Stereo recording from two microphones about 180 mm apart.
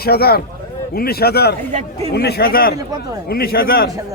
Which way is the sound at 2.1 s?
65° left (ahead or behind).